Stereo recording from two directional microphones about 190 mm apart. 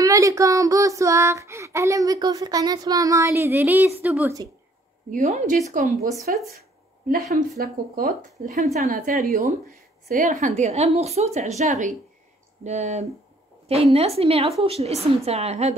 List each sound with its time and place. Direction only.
0.0 s child singing: 15° right (ahead or behind)
5.1 s a woman's voice: 45° right (ahead or behind)
6.3 s speech: 45° right (ahead or behind)
7.5 s a woman's voice: 50° right (ahead or behind); by 15.7 s 35° right (ahead or behind)